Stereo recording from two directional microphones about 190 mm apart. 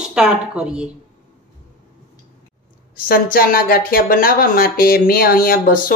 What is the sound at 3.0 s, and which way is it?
Speech, 50° left (ahead or behind).